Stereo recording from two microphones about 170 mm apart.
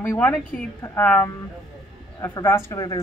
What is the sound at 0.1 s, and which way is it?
A woman's voice, 20° left (ahead or behind).